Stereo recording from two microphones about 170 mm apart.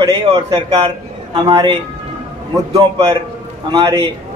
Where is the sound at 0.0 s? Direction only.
25° right (ahead or behind).